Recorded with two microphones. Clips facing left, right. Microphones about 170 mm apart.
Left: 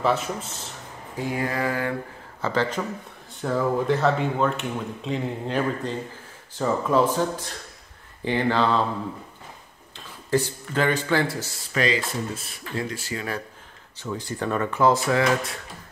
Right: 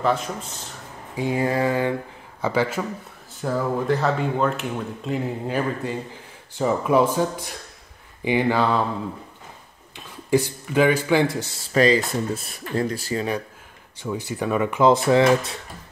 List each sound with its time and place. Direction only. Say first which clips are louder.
0.0 s speech: right 1 dB; 5° left (ahead or behind)
1.1 s mantra: right 5 dB; 20° right (ahead or behind)
2.4 s speech: right 2 dB; 10° right (ahead or behind)
9.9 s speech: right 3 dB; 15° right (ahead or behind)
11.7 s a sound: right 6 dB; 40° right (ahead or behind)
14.0 s speech: right 2 dB; 10° right (ahead or behind)